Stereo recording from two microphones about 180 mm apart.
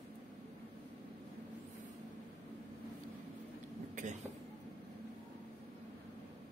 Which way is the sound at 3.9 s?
45° right (ahead or behind).